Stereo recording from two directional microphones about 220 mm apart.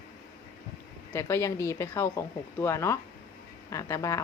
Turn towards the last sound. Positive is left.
turn(degrees=15)  # may be behind; listen again after turning